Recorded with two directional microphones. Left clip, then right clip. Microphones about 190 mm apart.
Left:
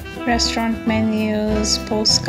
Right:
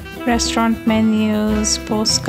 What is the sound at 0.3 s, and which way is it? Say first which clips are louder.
Speech: right 2 dB; 30° right (ahead or behind).